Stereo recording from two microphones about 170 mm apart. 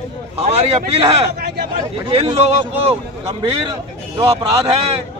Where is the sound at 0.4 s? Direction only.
35° right (ahead or behind).